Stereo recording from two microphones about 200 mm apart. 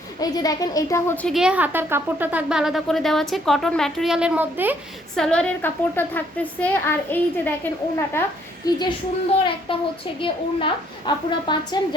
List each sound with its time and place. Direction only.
0.2 s a woman's voice: 20° left (ahead or behind); by 4.8 s 10° right (ahead or behind)
5.1 s a woman's voice: 5° left (ahead or behind); by 8.8 s 20° left (ahead or behind)
10.2 s a child's voice: 25° left (ahead or behind)